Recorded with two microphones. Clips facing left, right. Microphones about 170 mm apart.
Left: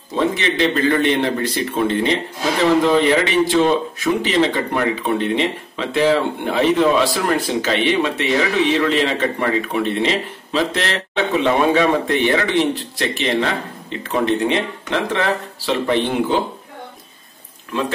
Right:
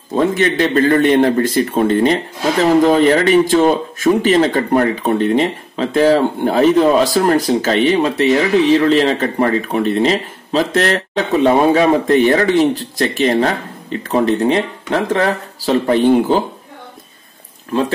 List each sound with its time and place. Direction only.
0.1 s a man's voice: 45° right (ahead or behind)